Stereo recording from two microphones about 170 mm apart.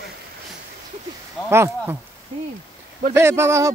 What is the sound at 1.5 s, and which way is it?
Speech, 15° right (ahead or behind).